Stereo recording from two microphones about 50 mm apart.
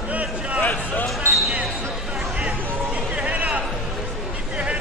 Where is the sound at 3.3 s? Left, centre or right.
Right.